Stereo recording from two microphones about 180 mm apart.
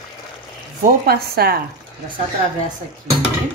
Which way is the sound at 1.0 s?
60° right (ahead or behind).